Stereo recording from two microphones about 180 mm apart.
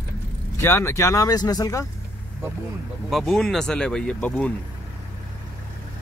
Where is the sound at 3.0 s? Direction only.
Centre (ahead or behind).